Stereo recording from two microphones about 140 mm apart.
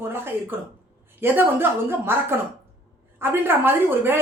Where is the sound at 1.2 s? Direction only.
15° right (ahead or behind).